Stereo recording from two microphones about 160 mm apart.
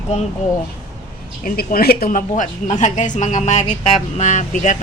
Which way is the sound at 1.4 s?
60° left (ahead or behind).